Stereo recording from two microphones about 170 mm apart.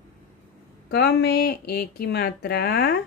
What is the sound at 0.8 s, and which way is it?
Speech, 75° left (ahead or behind).